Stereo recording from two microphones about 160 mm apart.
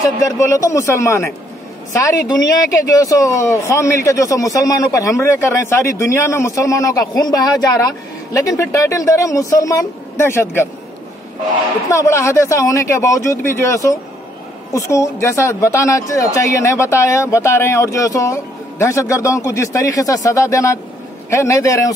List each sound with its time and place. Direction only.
0.0 s speech: 20° left (ahead or behind)
11.9 s speech: 15° left (ahead or behind)